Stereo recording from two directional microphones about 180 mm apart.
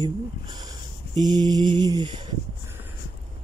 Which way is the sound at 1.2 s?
25° right (ahead or behind).